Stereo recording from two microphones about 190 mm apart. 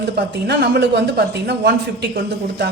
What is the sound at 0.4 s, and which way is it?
A man's voice, 60° right (ahead or behind).